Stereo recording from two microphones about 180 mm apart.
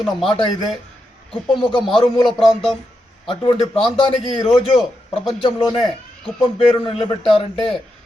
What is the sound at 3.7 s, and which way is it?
Speech, 25° left (ahead or behind).